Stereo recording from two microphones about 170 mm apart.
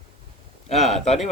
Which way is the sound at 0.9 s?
40° left (ahead or behind).